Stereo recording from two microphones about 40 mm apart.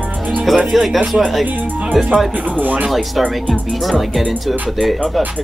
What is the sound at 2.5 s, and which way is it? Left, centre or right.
Speech, right.